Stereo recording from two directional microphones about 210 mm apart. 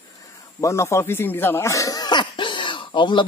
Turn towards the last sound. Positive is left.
turn(degrees=20)  # may be behind; listen again after turning